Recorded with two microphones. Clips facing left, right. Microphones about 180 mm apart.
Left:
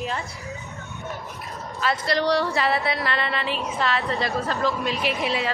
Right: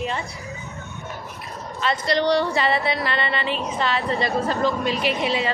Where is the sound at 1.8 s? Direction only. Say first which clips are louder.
Right 2 dB; centre (ahead or behind).